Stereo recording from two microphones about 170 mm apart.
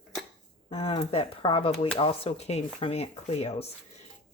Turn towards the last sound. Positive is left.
turn(degrees=35)  # may be behind; listen again after turning